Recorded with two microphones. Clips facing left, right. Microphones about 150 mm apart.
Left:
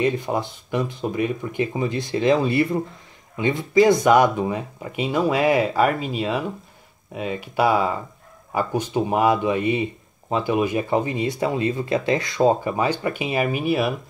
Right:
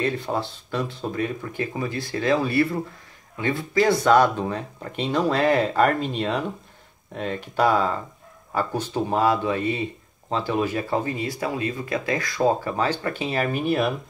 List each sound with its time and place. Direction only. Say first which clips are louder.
0.0 s speech: left 3 dB; 15° left (ahead or behind)